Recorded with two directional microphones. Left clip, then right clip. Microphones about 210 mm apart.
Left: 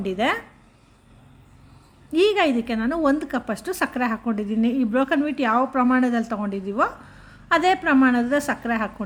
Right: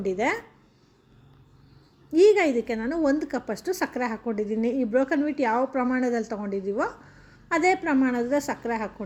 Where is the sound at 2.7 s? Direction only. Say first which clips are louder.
Left 3 dB; 10° left (ahead or behind).